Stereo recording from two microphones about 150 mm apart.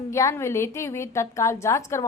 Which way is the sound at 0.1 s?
20° left (ahead or behind).